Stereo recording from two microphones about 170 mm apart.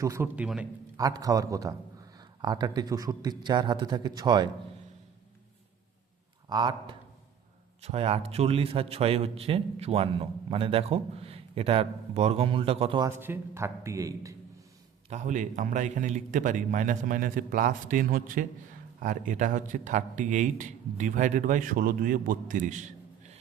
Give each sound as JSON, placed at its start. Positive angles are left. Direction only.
{"t": 0.0, "sound": "speech", "side_deg": -15}
{"t": 0.4, "sound": "a man's voice", "side_deg": -5}
{"t": 0.9, "sound": "a man's voice", "side_deg": -20}
{"t": 6.5, "sound": "a man's voice", "side_deg": -25}
{"t": 7.8, "sound": "a man's voice", "side_deg": -35}
{"t": 13.0, "sound": "speech", "side_deg": -15}
{"t": 15.1, "sound": "speech", "side_deg": -45}